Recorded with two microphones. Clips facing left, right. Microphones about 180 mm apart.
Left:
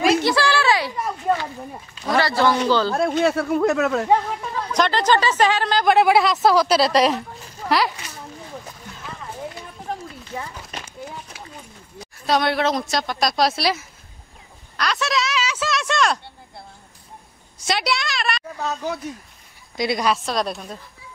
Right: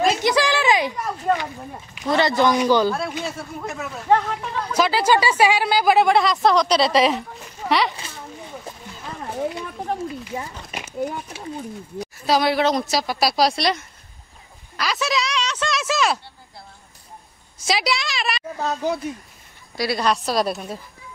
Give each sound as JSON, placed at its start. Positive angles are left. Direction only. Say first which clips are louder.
{"t": 0.2, "sound": "a sound", "louder": "even", "side_deg": -15}
{"t": 1.3, "sound": "a sound", "louder": "even", "side_deg": 5}
{"t": 2.0, "sound": "speech", "louder": "right 1 dB", "side_deg": -20}
{"t": 2.9, "sound": "speech", "louder": "left 4 dB", "side_deg": 45}
{"t": 3.2, "sound": "speech", "louder": "left 11 dB", "side_deg": 65}
{"t": 4.1, "sound": "a woman's voice", "louder": "even", "side_deg": 5}
{"t": 10.7, "sound": "a sound", "louder": "right 2 dB", "side_deg": -10}
{"t": 11.3, "sound": "a sound", "louder": "right 7 dB", "side_deg": -25}
{"t": 12.0, "sound": "a woman's voice", "louder": "right 1 dB", "side_deg": 0}
{"t": 17.6, "sound": "a woman's voice", "louder": "even", "side_deg": 0}
{"t": 18.6, "sound": "speech", "louder": "right 5 dB", "side_deg": -20}
{"t": 19.8, "sound": "a woman's voice", "louder": "left 1 dB", "side_deg": 20}
{"t": 20.1, "sound": "a woman's voice", "louder": "right 1 dB", "side_deg": -5}